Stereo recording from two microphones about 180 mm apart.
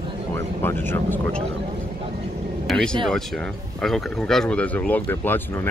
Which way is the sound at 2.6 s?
5° left (ahead or behind).